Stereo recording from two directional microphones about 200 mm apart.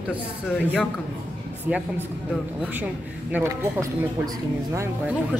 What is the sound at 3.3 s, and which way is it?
Speech, 10° right (ahead or behind).